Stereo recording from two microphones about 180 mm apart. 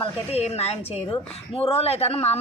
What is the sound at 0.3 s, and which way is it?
Speech, 35° left (ahead or behind).